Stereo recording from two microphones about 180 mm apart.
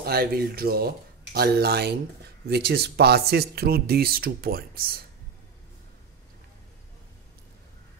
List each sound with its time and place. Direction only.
0.0 s speech: 60° right (ahead or behind)